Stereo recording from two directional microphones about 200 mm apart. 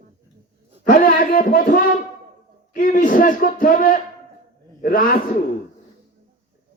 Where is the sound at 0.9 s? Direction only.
45° left (ahead or behind).